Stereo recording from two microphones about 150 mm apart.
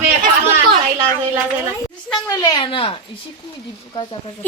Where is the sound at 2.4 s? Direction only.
25° left (ahead or behind).